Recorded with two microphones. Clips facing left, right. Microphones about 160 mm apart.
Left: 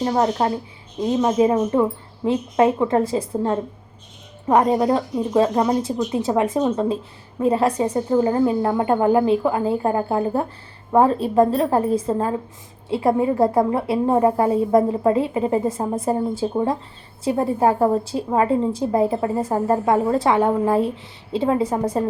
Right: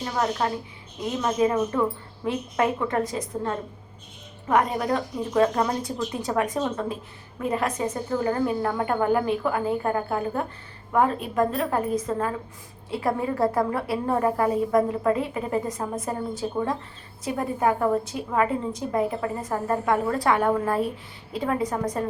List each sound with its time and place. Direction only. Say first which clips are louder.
0.0 s a woman's voice: left 6 dB; 35° left (ahead or behind)